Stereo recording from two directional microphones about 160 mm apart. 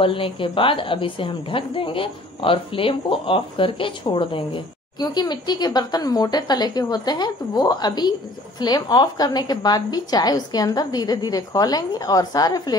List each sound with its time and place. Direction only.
0.0 s a woman's voice: 35° left (ahead or behind)